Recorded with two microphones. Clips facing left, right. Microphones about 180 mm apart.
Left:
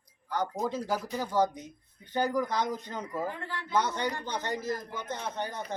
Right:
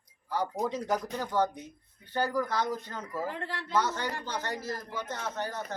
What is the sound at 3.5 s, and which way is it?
Speech, 80° right.